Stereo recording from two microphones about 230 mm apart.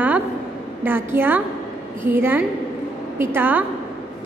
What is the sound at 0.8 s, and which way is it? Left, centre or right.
A woman's voice, centre.